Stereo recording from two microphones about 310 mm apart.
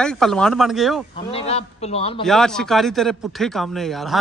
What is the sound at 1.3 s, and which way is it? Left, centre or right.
Speech, centre.